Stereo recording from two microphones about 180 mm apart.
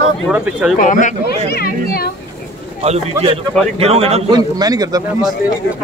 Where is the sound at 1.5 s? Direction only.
60° left (ahead or behind).